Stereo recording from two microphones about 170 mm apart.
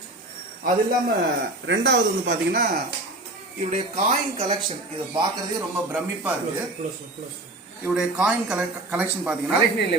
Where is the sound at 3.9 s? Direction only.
40° right (ahead or behind).